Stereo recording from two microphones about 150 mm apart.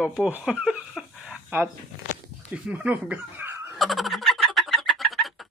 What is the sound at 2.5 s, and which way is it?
Speech, 10° right (ahead or behind).